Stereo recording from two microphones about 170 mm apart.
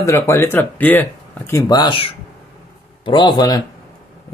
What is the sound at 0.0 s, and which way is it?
A man's voice, 15° left (ahead or behind).